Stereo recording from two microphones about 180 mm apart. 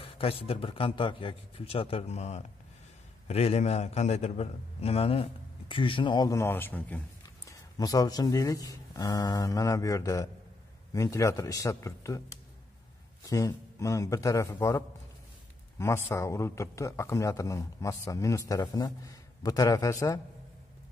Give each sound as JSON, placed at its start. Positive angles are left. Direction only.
{"t": 0.0, "sound": "a man's voice", "side_deg": 30}
{"t": 15.8, "sound": "a man's voice", "side_deg": 15}